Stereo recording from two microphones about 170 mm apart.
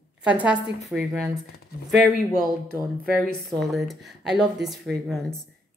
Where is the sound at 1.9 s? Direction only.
65° right (ahead or behind).